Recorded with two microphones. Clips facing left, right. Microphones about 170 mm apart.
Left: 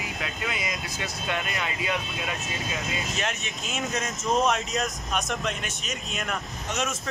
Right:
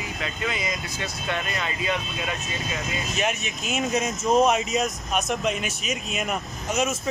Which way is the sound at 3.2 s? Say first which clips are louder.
Right 4 dB; 10° right (ahead or behind).